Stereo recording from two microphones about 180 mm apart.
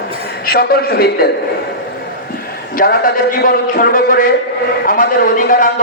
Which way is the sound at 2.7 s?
55° left (ahead or behind).